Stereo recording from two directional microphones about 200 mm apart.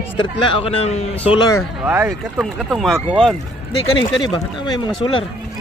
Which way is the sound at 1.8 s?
10° right (ahead or behind).